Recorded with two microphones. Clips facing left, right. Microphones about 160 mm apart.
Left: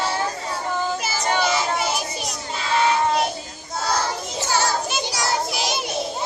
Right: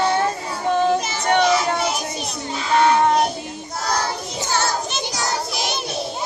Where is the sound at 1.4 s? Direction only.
5° left (ahead or behind).